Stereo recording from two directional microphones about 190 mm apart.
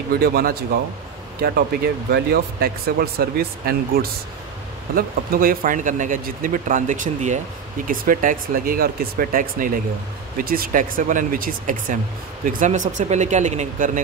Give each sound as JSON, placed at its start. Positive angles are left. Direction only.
{"t": 0.1, "sound": "speech", "side_deg": -50}
{"t": 2.0, "sound": "speech", "side_deg": -55}